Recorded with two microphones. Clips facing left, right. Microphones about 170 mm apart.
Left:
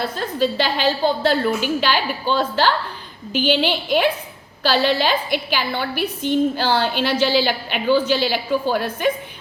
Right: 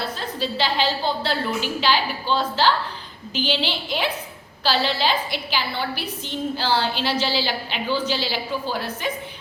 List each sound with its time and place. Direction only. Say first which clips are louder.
0.0 s a woman's voice: left 6 dB; 50° left (ahead or behind)